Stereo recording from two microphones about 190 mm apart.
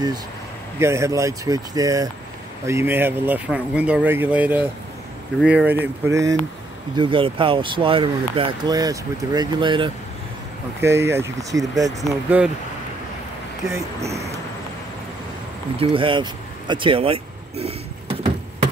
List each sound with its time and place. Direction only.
0.7 s speech: 15° right (ahead or behind)
7.0 s speech: 25° right (ahead or behind)
10.8 s speech: 15° right (ahead or behind)
14.0 s speech: 35° right (ahead or behind)
15.8 s speech: 25° right (ahead or behind)